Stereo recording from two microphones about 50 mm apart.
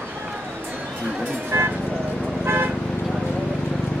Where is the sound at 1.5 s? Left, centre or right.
Right.